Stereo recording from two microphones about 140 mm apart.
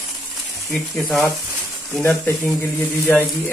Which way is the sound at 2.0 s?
15° left (ahead or behind).